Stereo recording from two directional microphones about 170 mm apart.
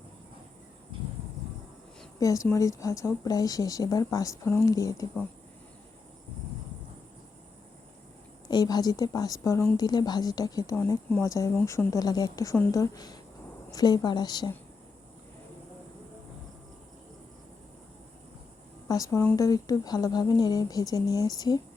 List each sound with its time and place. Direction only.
2.1 s speech: 20° left (ahead or behind)
8.4 s speech: 25° left (ahead or behind)
18.9 s speech: 20° left (ahead or behind)